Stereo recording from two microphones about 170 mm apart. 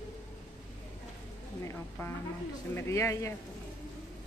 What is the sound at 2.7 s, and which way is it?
Speech, 15° left (ahead or behind).